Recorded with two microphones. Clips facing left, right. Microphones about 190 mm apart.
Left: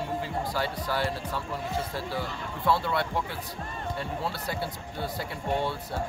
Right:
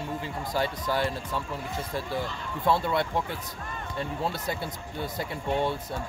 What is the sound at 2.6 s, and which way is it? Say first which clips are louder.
Speech: right 1 dB; 20° right (ahead or behind).